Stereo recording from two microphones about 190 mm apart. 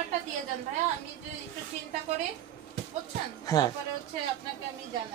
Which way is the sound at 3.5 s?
15° left (ahead or behind).